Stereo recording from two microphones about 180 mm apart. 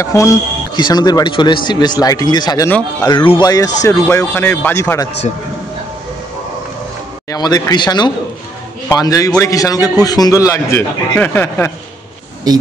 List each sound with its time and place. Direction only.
0.0 s a man's voice: 15° left (ahead or behind)
7.2 s a man's voice: 20° left (ahead or behind)